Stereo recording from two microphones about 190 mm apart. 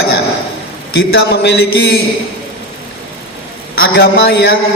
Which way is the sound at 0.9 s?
60° left (ahead or behind).